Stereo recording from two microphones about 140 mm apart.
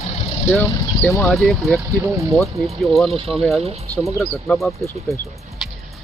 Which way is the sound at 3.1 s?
45° right (ahead or behind).